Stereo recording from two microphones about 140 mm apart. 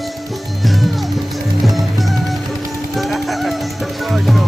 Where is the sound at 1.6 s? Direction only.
Centre (ahead or behind).